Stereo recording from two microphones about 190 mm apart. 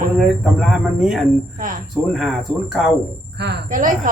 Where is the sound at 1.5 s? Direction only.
45° right (ahead or behind).